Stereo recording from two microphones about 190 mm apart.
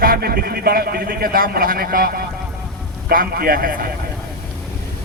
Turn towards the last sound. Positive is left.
turn(degrees=-50)  # may be behind; listen again after turning